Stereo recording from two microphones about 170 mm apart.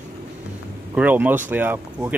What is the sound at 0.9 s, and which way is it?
Speech, 10° right (ahead or behind).